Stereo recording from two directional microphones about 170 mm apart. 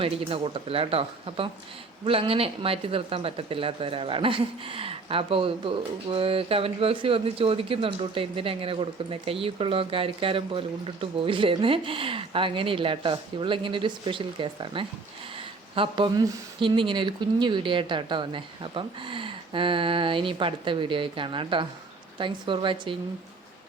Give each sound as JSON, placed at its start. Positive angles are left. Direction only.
{"t": 0.0, "sound": "speech", "side_deg": -30}